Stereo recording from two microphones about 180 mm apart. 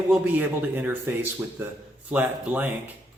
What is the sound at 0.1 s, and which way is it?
A man's voice, 10° right (ahead or behind).